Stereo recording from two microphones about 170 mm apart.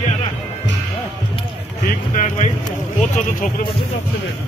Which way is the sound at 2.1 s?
50° left (ahead or behind).